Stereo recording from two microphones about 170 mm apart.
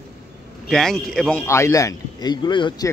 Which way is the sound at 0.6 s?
5° left (ahead or behind).